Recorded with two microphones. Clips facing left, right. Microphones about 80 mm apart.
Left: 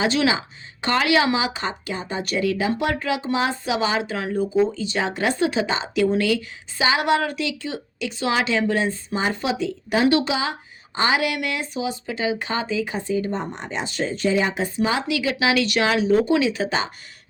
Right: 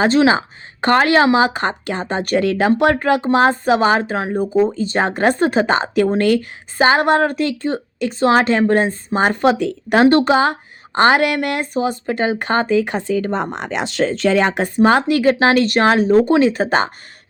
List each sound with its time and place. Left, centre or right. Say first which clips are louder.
0.0 s speech: right 7 dB; right
4.8 s speech: right 7 dB; right